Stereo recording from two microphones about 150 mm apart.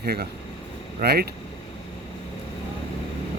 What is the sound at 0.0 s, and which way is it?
Speech, 90° right.